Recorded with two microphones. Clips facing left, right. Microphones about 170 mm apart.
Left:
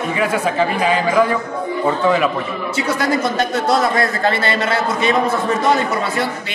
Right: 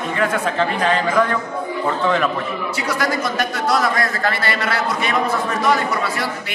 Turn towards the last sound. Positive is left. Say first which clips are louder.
# left 3 dB
turn(degrees=25)  # may be behind; listen again after turning